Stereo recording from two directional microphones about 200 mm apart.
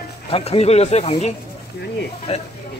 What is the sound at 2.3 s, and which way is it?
Speech, 35° left (ahead or behind).